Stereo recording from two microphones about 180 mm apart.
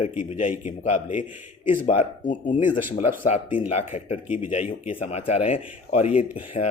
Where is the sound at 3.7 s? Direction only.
35° left (ahead or behind).